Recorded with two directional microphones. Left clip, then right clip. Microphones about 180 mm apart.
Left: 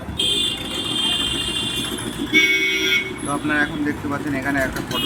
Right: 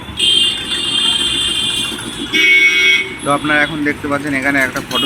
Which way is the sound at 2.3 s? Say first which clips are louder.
Right 7 dB; 60° left (ahead or behind).